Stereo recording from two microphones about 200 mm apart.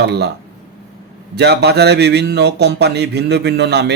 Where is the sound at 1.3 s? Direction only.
55° right (ahead or behind).